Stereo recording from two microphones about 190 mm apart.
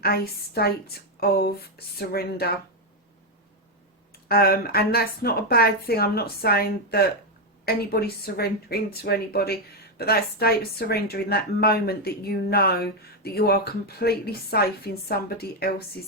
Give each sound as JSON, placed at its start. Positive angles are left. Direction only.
{"t": 0.0, "sound": "a woman's voice", "side_deg": 55}
{"t": 4.3, "sound": "a woman's voice", "side_deg": 55}